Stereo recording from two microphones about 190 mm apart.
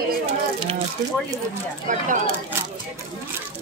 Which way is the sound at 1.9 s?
40° right (ahead or behind).